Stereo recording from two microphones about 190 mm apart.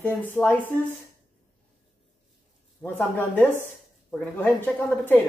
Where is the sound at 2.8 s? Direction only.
10° left (ahead or behind).